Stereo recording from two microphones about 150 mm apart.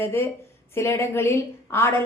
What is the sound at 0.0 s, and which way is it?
Speech, 15° left (ahead or behind).